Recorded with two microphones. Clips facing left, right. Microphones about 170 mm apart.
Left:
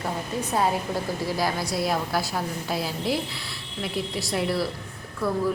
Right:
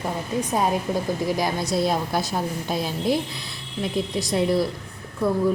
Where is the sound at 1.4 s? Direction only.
20° right (ahead or behind).